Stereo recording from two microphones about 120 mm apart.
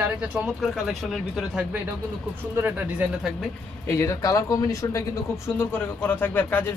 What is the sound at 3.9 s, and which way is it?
Speech, 25° left (ahead or behind).